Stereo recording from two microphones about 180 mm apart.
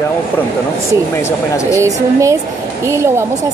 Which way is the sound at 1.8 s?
15° right (ahead or behind).